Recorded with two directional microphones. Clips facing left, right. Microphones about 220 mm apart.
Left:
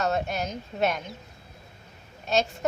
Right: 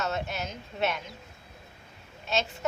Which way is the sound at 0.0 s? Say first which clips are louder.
Left 5 dB; 45° left (ahead or behind).